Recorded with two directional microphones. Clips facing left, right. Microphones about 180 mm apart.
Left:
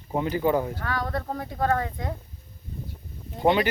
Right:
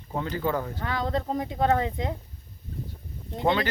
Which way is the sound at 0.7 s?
20° right (ahead or behind).